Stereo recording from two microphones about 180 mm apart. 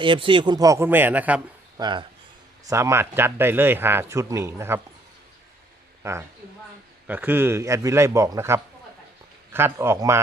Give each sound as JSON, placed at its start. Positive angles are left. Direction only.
{"t": 0.0, "sound": "speech", "side_deg": -25}
{"t": 1.8, "sound": "speech", "side_deg": -25}
{"t": 6.0, "sound": "speech", "side_deg": -15}